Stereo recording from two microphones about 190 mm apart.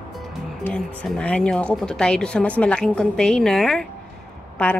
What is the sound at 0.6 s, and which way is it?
A woman's voice, 5° left (ahead or behind).